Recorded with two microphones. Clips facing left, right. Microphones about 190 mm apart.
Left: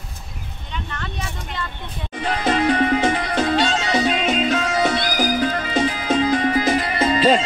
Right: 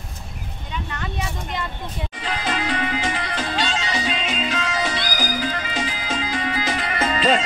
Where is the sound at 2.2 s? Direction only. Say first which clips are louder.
Left 7 dB; 55° left (ahead or behind).